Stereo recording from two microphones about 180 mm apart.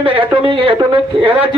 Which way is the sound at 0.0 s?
30° right (ahead or behind).